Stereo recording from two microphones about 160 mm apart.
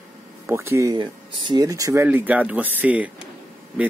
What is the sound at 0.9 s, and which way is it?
Speech, 30° right (ahead or behind).